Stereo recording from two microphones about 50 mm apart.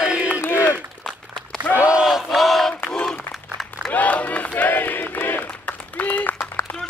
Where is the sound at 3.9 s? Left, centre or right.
Left.